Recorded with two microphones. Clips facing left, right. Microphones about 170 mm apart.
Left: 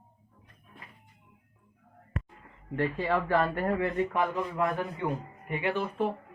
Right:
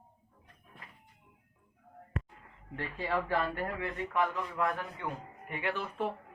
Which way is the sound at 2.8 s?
65° left (ahead or behind).